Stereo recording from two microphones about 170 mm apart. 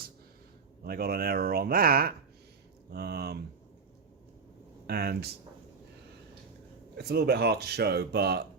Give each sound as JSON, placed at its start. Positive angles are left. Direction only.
{"t": 0.9, "sound": "speech", "side_deg": -65}
{"t": 4.9, "sound": "speech", "side_deg": -70}
{"t": 6.9, "sound": "speech", "side_deg": -70}